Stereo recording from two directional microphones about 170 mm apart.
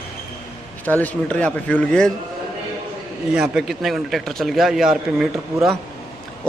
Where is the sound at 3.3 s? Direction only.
Centre (ahead or behind).